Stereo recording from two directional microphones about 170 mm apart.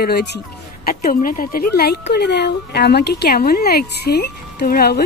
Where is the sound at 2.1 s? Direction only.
80° left.